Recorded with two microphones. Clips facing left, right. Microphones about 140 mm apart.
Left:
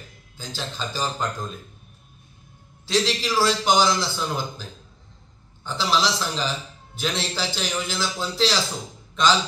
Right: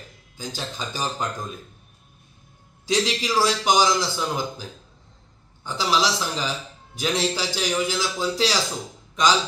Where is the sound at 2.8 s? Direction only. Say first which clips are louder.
Even; 15° right (ahead or behind).